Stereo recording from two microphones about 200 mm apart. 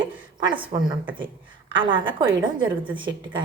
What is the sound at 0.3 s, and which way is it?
A woman's voice, 25° right (ahead or behind).